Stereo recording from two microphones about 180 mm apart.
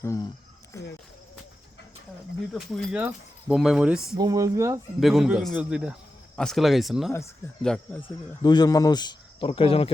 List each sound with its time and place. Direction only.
0.0 s speech: 15° left (ahead or behind)
2.5 s speech: centre (ahead or behind)
4.2 s speech: 20° right (ahead or behind)
4.9 s speech: centre (ahead or behind)
8.4 s speech: 20° left (ahead or behind)